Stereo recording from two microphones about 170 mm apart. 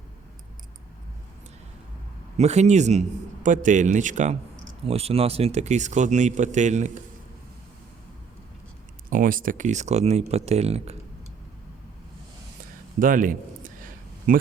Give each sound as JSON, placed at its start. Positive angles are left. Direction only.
{"t": 2.4, "sound": "a man's voice", "side_deg": -40}
{"t": 9.0, "sound": "speech", "side_deg": -55}
{"t": 13.0, "sound": "a sound", "side_deg": -55}